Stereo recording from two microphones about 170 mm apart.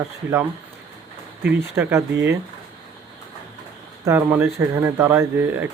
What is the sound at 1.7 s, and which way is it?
Speech, 15° right (ahead or behind).